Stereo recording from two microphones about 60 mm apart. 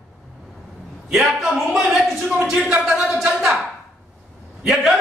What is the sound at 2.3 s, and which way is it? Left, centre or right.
Speech, right.